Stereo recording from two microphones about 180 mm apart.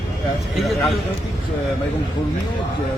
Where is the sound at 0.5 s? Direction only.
Centre (ahead or behind).